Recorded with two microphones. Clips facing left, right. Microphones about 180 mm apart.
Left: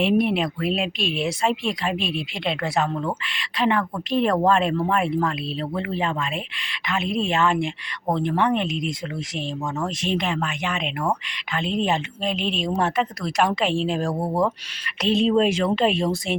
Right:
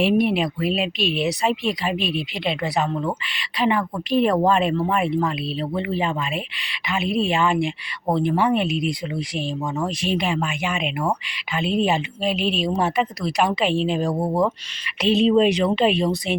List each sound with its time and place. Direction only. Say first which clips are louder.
0.0 s speech: right 1 dB; centre (ahead or behind)